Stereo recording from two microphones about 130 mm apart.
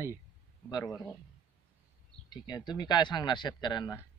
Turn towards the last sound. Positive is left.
turn(degrees=35)  # may be behind; listen again after turning